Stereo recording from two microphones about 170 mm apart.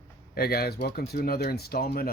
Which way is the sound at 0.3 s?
65° left (ahead or behind).